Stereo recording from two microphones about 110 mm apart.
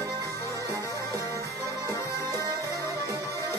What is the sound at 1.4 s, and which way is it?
Music, 30° left (ahead or behind).